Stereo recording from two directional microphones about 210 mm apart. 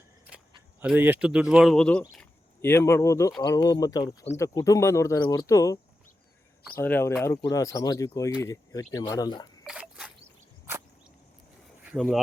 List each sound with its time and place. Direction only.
0.3 s cricket: 5° right (ahead or behind)
0.8 s speech: 10° right (ahead or behind); by 9.6 s 20° left (ahead or behind)
9.6 s a sound: 5° right (ahead or behind)
11.9 s speech: 5° right (ahead or behind)